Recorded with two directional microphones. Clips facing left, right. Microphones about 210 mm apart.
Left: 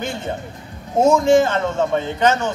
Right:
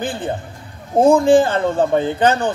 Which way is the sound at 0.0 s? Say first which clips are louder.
Right 3 dB; 30° right (ahead or behind).